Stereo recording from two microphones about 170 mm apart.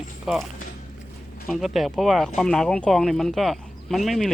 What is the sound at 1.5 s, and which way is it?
Speech, centre (ahead or behind).